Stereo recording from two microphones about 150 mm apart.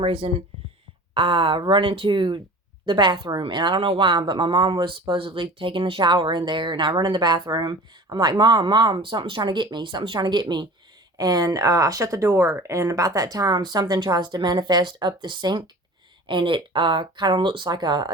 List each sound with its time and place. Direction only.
0.0 s speech: 35° right (ahead or behind)